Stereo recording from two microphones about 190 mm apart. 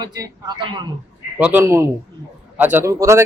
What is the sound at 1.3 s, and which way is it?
A man's voice, 10° right (ahead or behind).